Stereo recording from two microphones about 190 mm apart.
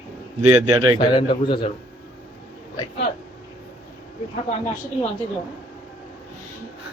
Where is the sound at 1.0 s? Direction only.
25° left (ahead or behind).